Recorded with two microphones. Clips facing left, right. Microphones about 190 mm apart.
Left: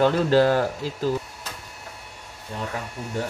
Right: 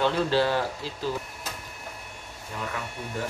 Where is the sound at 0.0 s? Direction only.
45° left (ahead or behind).